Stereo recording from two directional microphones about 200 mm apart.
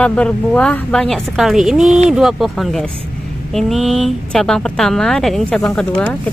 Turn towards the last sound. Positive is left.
turn(degrees=5)  # may be behind; listen again after turning